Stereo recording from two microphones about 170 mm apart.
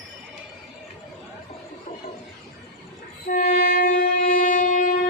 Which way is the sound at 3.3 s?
60° left (ahead or behind).